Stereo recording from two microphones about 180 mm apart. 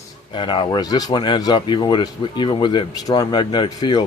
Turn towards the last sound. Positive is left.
turn(degrees=25)  # may be behind; listen again after turning